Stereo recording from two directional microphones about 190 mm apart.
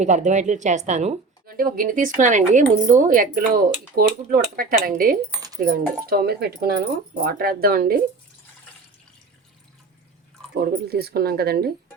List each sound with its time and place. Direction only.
0.0 s speech: 40° right (ahead or behind)
10.5 s speech: 55° right (ahead or behind)